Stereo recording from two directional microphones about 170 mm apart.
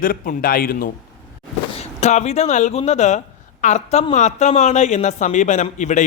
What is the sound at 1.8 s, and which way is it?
Speech, 40° left (ahead or behind).